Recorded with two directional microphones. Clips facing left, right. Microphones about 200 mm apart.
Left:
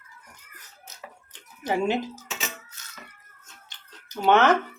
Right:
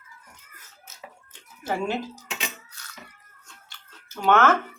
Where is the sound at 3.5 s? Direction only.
20° left (ahead or behind).